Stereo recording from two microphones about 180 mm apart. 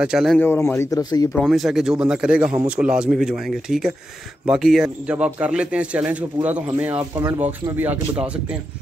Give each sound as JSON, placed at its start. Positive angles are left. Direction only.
{"t": 0.0, "sound": "a man's voice", "side_deg": -5}
{"t": 0.4, "sound": "speech", "side_deg": 10}
{"t": 1.3, "sound": "a man's voice", "side_deg": 0}